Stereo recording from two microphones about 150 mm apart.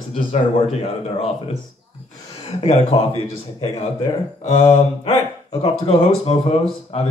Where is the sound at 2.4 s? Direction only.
45° left (ahead or behind).